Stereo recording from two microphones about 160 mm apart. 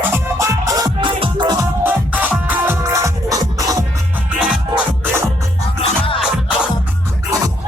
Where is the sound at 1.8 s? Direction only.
10° right (ahead or behind).